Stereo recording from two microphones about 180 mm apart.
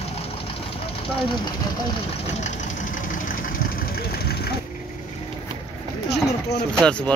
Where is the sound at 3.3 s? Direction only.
50° left (ahead or behind).